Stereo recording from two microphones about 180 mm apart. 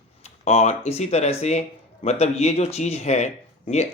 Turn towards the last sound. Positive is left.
turn(degrees=40)  # may be behind; listen again after turning